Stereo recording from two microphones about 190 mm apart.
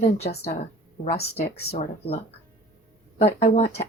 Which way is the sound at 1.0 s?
30° left (ahead or behind).